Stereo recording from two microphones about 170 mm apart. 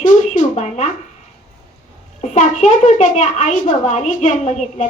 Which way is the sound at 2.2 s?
45° left (ahead or behind).